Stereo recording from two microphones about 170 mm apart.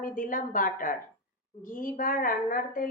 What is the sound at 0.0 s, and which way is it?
A woman's voice, 50° left (ahead or behind).